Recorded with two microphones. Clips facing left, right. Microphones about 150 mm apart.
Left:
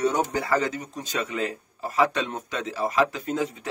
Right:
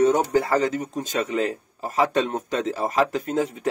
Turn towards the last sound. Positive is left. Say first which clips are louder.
# right 3 dB
turn(degrees=-50)  # may be behind; listen again after turning